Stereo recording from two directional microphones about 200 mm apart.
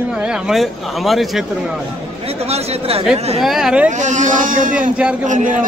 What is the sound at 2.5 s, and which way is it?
Speech, 30° right (ahead or behind).